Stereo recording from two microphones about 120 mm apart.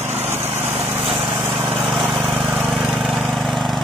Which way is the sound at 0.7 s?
50° right (ahead or behind).